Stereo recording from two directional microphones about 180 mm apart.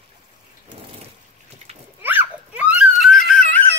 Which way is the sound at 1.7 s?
35° right (ahead or behind).